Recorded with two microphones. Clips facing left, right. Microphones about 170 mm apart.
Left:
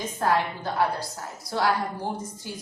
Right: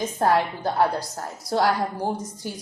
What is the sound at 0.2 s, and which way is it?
A woman's voice, 40° right (ahead or behind).